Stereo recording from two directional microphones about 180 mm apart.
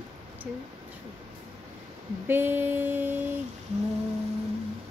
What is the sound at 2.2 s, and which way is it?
Speech, 10° right (ahead or behind).